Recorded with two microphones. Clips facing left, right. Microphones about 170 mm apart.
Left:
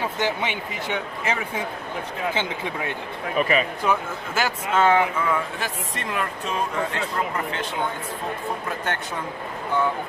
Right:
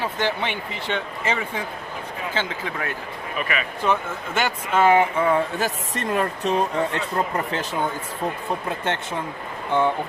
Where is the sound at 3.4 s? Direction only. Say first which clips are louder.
Left 6 dB; 35° left (ahead or behind).